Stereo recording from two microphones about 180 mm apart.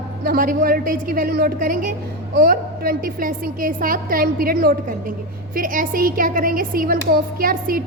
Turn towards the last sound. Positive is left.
turn(degrees=-50)  # may be behind; listen again after turning